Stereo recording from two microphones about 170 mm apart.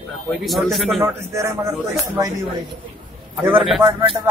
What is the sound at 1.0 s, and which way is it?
Speech, 15° right (ahead or behind).